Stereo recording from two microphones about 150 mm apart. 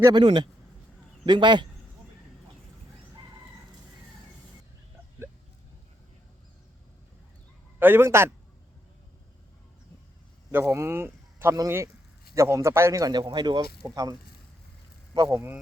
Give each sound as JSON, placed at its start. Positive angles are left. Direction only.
{"t": 0.0, "sound": "a man's voice", "side_deg": -30}
{"t": 7.8, "sound": "a man's voice", "side_deg": -15}
{"t": 10.5, "sound": "a man's voice", "side_deg": -15}